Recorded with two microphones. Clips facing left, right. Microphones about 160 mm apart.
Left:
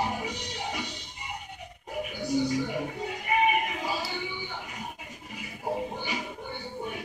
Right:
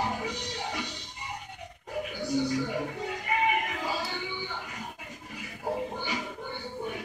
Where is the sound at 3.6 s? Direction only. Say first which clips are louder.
Left 1 dB; 20° left (ahead or behind).